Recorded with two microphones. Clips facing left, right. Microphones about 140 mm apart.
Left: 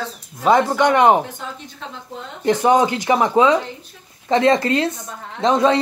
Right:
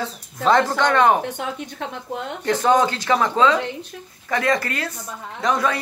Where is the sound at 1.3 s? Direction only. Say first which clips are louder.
Right 5 dB; 70° right (ahead or behind).